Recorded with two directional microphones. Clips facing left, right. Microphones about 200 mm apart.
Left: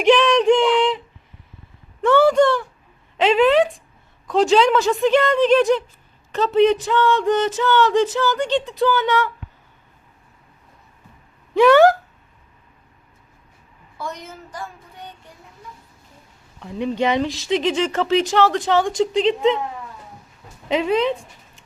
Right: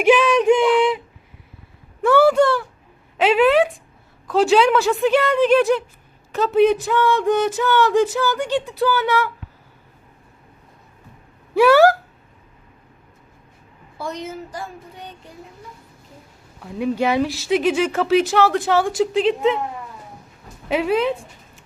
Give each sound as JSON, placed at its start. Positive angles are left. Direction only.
{"t": 0.0, "sound": "a sound", "side_deg": -5}
{"t": 4.3, "sound": "speech", "side_deg": -5}
{"t": 11.5, "sound": "speech", "side_deg": -5}
{"t": 14.0, "sound": "a woman's voice", "side_deg": -30}
{"t": 16.6, "sound": "speech", "side_deg": -5}
{"t": 20.7, "sound": "speech", "side_deg": -5}